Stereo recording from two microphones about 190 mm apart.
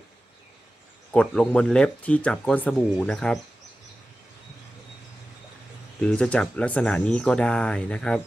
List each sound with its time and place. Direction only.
1.1 s speech: 5° left (ahead or behind)
5.9 s speech: 5° left (ahead or behind)